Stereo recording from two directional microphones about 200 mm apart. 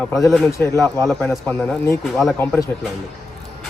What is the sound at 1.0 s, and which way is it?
A man's voice, 5° left (ahead or behind).